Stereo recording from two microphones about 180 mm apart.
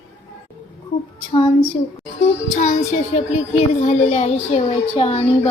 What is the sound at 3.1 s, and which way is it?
A child's voice, 40° left (ahead or behind).